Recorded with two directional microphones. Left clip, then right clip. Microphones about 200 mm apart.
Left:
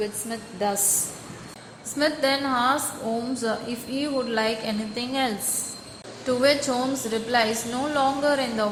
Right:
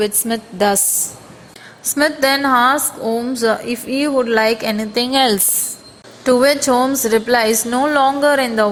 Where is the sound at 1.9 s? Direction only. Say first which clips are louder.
Right 8 dB; 40° right (ahead or behind).